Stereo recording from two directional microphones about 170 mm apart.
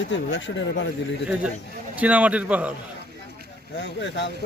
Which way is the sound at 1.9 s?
10° right (ahead or behind).